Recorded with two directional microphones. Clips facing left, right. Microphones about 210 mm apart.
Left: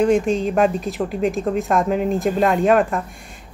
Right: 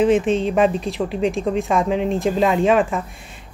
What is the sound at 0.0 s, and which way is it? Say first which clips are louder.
Speech: right 1 dB; centre (ahead or behind).